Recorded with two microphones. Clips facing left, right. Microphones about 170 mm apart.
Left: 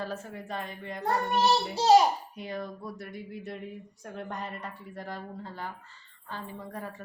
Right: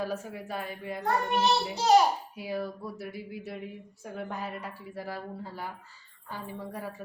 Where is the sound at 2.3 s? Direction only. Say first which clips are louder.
Right 3 dB; 5° right (ahead or behind).